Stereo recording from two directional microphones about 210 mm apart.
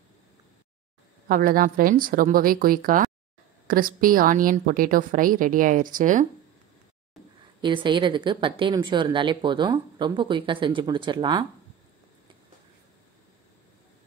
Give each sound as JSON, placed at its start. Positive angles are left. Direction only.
{"t": 1.3, "sound": "a woman's voice", "side_deg": -45}
{"t": 7.6, "sound": "speech", "side_deg": -20}